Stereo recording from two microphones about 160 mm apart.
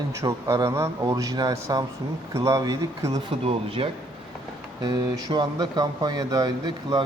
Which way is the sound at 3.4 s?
35° right (ahead or behind).